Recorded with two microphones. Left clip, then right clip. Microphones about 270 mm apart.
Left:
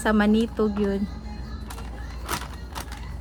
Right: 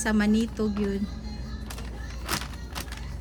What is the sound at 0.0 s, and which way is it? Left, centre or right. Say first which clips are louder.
Speech: left 4 dB; left.